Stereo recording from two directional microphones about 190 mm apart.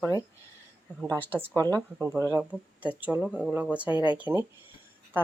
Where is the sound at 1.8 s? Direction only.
10° right (ahead or behind).